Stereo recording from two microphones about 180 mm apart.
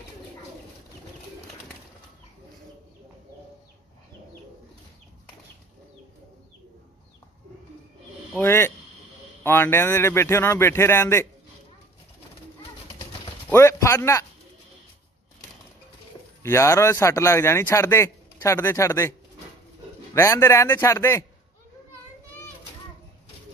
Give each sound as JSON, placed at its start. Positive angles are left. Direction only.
{"t": 8.4, "sound": "a man's voice", "side_deg": 15}
{"t": 13.5, "sound": "a sound", "side_deg": 15}
{"t": 16.4, "sound": "a man's voice", "side_deg": 15}
{"t": 20.2, "sound": "a man's voice", "side_deg": 15}